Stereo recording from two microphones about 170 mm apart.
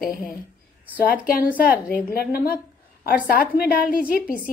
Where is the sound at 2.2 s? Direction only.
65° left (ahead or behind).